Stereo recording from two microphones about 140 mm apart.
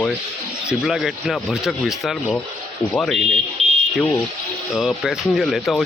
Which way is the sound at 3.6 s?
45° right (ahead or behind).